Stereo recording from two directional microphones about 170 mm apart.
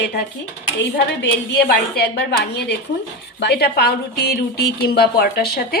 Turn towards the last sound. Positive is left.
turn(degrees=65)  # may be behind; listen again after turning